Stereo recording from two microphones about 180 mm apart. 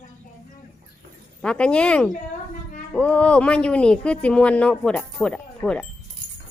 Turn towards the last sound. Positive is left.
turn(degrees=5)  # may be behind; listen again after turning